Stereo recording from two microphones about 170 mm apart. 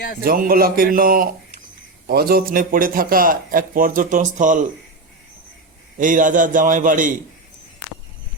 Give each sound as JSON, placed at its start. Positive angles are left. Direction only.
{"t": 0.3, "sound": "a man's voice", "side_deg": -60}
{"t": 6.0, "sound": "a man's voice", "side_deg": -50}